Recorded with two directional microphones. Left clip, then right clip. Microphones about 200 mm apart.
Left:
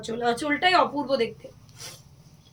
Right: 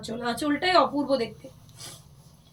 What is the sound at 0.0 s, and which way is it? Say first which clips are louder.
Speech: left 3 dB; 15° left (ahead or behind).